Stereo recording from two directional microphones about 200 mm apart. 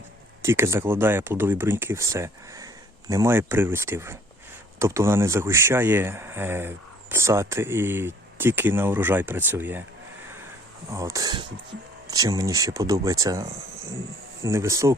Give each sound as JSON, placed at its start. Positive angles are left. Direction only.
{"t": 0.4, "sound": "speech", "side_deg": -15}
{"t": 10.9, "sound": "speech", "side_deg": -15}